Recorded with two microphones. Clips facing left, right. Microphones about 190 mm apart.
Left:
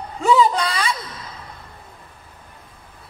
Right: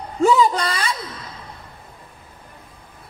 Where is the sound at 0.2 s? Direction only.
45° right (ahead or behind).